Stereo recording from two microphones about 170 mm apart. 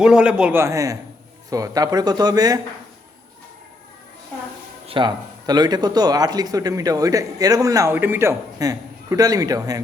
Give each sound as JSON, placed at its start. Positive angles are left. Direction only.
{"t": 0.0, "sound": "a man's voice", "side_deg": -5}
{"t": 4.9, "sound": "speech", "side_deg": -30}